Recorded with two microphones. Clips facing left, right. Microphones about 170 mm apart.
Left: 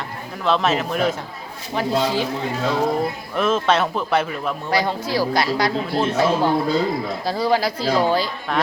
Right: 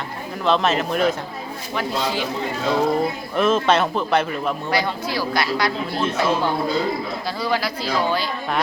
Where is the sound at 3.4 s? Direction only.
Centre (ahead or behind).